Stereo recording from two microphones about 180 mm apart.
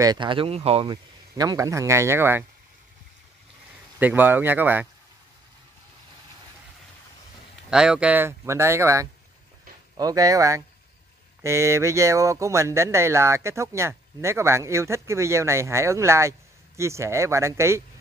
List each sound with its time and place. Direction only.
0.0 s speech: 25° right (ahead or behind)
1.3 s speech: 20° right (ahead or behind)
4.0 s speech: 10° right (ahead or behind)
7.7 s speech: 5° right (ahead or behind)